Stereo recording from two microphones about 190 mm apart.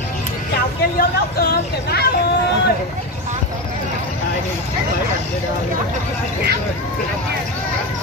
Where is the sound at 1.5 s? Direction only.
55° left (ahead or behind).